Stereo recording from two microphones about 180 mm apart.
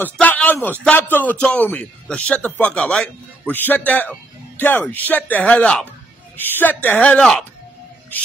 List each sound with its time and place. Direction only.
0.0 s a man's voice: 10° left (ahead or behind)